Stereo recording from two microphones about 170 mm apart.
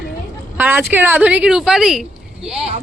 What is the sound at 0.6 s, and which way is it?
A woman's voice, 10° right (ahead or behind).